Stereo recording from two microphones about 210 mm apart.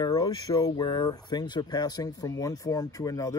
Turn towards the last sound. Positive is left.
turn(degrees=15)  # may be behind; listen again after turning